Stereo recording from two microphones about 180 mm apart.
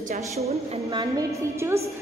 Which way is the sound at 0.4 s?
35° right (ahead or behind).